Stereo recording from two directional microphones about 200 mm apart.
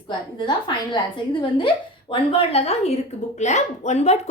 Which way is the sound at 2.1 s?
25° left (ahead or behind).